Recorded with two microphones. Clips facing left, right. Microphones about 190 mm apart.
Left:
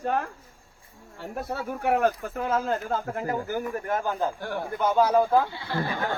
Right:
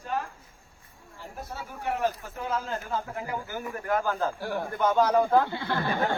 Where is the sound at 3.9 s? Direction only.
20° left (ahead or behind).